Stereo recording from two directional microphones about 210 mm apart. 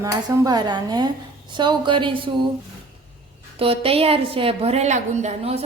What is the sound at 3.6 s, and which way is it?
A woman's voice, 25° right (ahead or behind).